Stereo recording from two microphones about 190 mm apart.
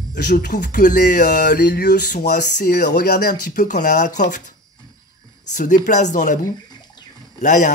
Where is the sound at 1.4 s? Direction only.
60° left (ahead or behind).